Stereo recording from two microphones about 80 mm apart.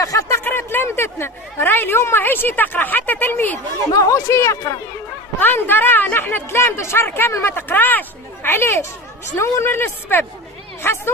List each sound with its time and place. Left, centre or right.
0.0 s a sound: left
0.4 s a woman's voice: left
3.9 s speech: left
5.4 s a woman's voice: left